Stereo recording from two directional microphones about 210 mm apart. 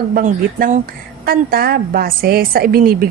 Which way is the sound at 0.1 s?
40° right (ahead or behind).